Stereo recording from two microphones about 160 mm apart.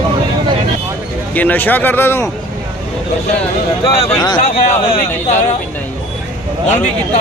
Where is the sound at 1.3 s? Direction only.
10° left (ahead or behind).